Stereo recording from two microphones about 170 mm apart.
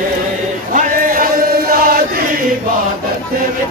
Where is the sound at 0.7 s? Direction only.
55° right (ahead or behind).